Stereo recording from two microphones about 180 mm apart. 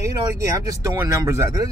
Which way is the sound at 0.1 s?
20° right (ahead or behind).